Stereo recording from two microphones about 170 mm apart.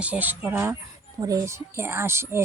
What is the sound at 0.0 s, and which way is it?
A child's voice, 10° right (ahead or behind).